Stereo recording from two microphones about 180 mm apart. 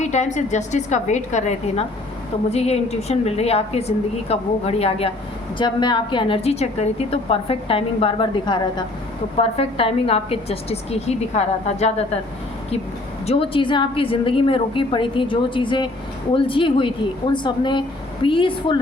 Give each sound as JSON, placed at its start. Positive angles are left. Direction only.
{"t": 0.0, "sound": "a woman's voice", "side_deg": 40}
{"t": 13.2, "sound": "a woman's voice", "side_deg": 30}